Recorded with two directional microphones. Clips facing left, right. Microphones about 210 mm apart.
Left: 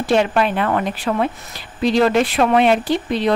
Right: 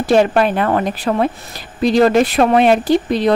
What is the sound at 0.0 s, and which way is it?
Speech, 40° right (ahead or behind).